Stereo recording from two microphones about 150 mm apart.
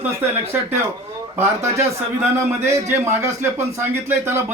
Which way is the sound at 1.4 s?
20° right (ahead or behind).